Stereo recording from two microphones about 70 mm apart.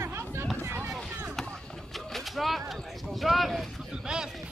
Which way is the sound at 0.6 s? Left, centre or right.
Right.